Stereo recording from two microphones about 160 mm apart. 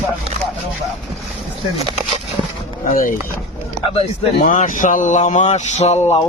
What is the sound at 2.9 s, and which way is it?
Speech, 55° left (ahead or behind).